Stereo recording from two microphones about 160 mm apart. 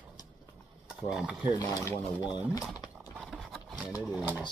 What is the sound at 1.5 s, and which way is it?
Speech, 25° left (ahead or behind).